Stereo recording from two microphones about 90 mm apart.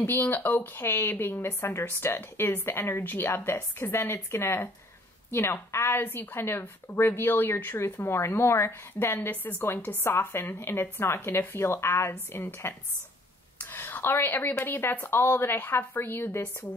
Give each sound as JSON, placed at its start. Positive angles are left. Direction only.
{"t": 0.0, "sound": "a woman's voice", "side_deg": 25}
{"t": 13.6, "sound": "a sound", "side_deg": 20}
{"t": 14.6, "sound": "a woman's voice", "side_deg": 25}